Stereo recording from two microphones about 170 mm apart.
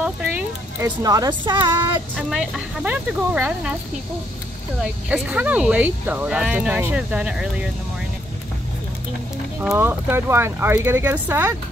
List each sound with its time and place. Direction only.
0.7 s speech: 20° right (ahead or behind)
2.1 s speech: centre (ahead or behind)
5.1 s speech: 10° right (ahead or behind)
9.6 s speech: 10° right (ahead or behind)